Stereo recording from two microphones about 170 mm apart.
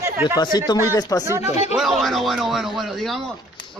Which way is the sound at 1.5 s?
40° left (ahead or behind).